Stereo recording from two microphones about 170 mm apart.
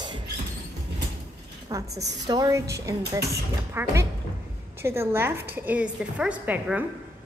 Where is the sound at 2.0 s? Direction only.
20° right (ahead or behind).